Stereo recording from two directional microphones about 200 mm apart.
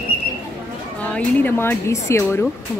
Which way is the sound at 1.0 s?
10° left (ahead or behind).